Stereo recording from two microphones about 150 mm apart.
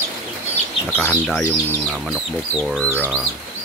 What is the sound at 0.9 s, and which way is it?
Speech, 15° left (ahead or behind).